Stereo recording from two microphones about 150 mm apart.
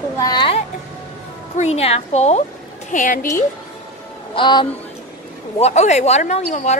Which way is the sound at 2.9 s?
60° left (ahead or behind).